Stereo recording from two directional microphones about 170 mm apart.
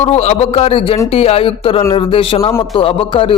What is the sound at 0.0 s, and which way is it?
A man's voice, 40° left (ahead or behind).